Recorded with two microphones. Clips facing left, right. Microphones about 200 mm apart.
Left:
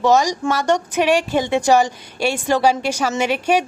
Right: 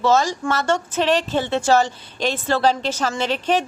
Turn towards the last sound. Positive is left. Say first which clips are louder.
# left 3 dB
turn(degrees=10)  # may be behind; listen again after turning